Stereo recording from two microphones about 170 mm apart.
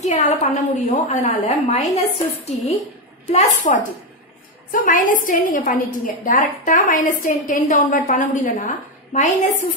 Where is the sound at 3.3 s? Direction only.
50° left (ahead or behind).